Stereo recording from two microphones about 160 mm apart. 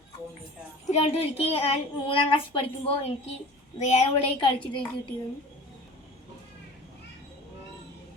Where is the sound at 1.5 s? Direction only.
40° left (ahead or behind).